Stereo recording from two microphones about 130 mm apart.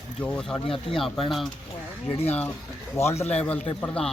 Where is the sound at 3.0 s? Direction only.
55° left (ahead or behind).